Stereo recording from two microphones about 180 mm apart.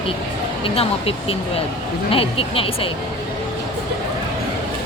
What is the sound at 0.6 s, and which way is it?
A woman's voice, 30° left (ahead or behind).